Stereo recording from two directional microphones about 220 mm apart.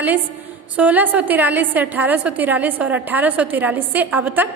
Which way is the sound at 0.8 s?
5° right (ahead or behind).